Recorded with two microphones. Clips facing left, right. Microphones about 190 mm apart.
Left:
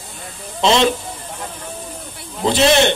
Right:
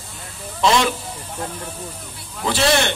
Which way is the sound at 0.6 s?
25° left (ahead or behind).